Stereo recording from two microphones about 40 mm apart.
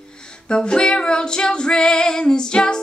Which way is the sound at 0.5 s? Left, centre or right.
Left.